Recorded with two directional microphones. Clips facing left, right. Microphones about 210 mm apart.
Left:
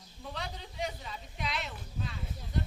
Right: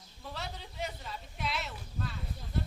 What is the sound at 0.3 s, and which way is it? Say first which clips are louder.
Speech: left 1 dB; 5° right (ahead or behind).